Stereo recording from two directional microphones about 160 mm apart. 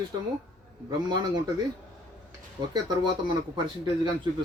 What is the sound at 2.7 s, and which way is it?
Speech, 25° right (ahead or behind).